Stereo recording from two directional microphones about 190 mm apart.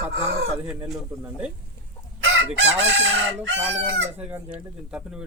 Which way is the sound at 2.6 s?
75° right (ahead or behind).